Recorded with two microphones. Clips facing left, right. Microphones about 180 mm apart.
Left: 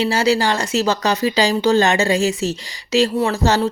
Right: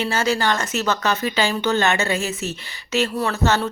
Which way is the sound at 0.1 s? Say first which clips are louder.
Left 4 dB; 30° left (ahead or behind).